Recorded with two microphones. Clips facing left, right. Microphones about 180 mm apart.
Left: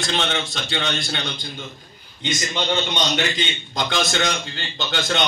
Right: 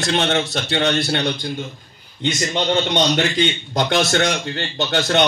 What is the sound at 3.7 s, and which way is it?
A man's voice, 65° right (ahead or behind).